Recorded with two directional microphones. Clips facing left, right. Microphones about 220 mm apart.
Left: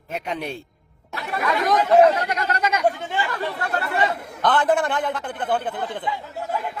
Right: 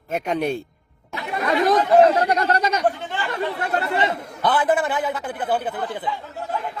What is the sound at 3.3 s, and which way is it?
Speech, 25° right (ahead or behind).